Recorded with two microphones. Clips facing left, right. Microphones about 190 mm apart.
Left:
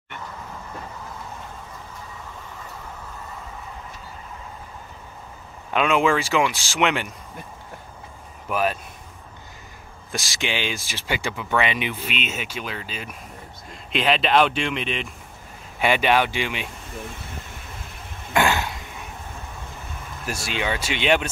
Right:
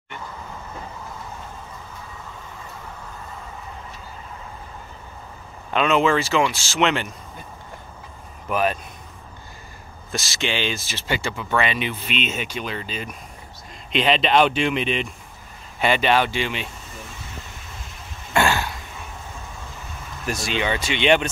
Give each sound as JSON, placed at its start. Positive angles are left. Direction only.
{"t": 5.7, "sound": "speech", "side_deg": 10}
{"t": 8.5, "sound": "speech", "side_deg": 5}
{"t": 10.1, "sound": "speech", "side_deg": 15}
{"t": 15.8, "sound": "speech", "side_deg": 10}
{"t": 18.3, "sound": "throat clearing", "side_deg": 15}
{"t": 20.2, "sound": "speech", "side_deg": 5}